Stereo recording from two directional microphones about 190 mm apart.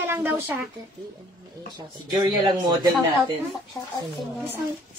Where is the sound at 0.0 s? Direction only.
10° right (ahead or behind).